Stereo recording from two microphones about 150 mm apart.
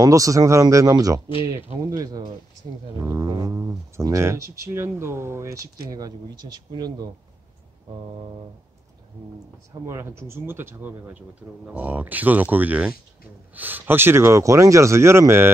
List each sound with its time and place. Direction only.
0.0 s speech: 20° right (ahead or behind)
9.8 s speech: 20° right (ahead or behind)